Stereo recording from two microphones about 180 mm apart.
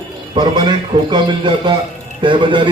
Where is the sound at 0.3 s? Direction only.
25° right (ahead or behind).